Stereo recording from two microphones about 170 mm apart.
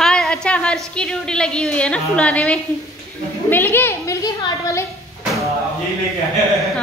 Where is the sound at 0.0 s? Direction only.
5° left (ahead or behind); by 4.8 s 20° left (ahead or behind).